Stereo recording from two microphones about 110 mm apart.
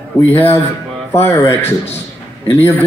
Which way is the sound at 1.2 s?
25° left (ahead or behind).